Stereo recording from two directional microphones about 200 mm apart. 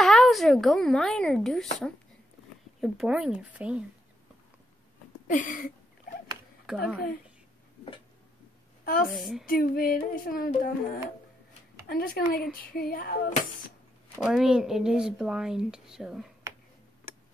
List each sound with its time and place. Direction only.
0.0 s speech: centre (ahead or behind)
2.8 s speech: 5° right (ahead or behind)
5.3 s a sound: 40° left (ahead or behind)
6.7 s speech: 5° right (ahead or behind)
8.8 s a woman's voice: 45° left (ahead or behind)
9.1 s speech: centre (ahead or behind)
9.5 s child singing: 45° left (ahead or behind)
14.2 s speech: 5° right (ahead or behind)